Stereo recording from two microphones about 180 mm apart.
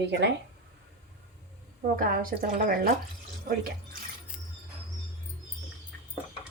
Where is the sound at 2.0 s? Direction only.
50° right (ahead or behind).